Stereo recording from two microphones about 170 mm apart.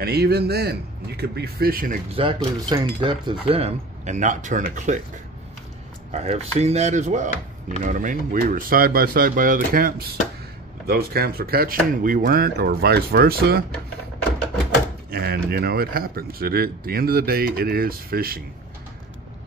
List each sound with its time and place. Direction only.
0.0 s speech: 65° right (ahead or behind)
2.1 s cutlery: 25° right (ahead or behind); by 5.0 s 45° right (ahead or behind)
6.1 s cutlery: 40° right (ahead or behind)
7.9 s speech: 50° right (ahead or behind)
15.0 s speech: 65° right (ahead or behind)